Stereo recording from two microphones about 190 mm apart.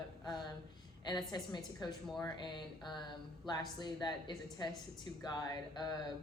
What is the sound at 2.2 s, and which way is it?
A woman's voice, 25° left (ahead or behind).